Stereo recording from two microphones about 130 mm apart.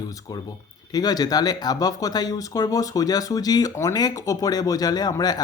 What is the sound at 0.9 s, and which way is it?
Speech, 30° left (ahead or behind).